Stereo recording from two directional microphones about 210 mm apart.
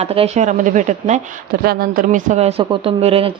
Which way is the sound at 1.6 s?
45° right (ahead or behind).